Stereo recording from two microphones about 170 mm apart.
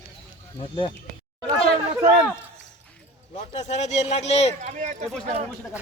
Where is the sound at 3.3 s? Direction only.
40° left (ahead or behind).